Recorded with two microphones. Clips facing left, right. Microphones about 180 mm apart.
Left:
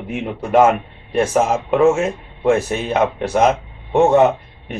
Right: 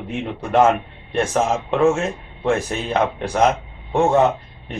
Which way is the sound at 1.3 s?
Centre (ahead or behind).